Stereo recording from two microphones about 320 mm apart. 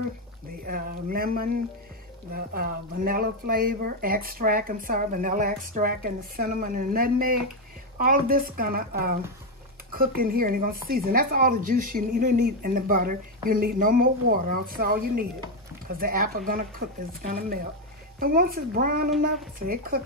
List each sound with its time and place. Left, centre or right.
0.7 s speech: right